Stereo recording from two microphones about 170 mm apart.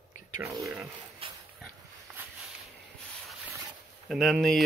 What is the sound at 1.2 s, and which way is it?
Dog, 30° right (ahead or behind).